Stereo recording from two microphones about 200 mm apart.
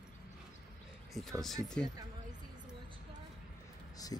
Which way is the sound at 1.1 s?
Centre (ahead or behind).